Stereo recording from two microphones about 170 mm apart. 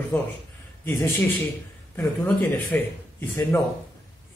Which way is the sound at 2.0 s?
10° left (ahead or behind).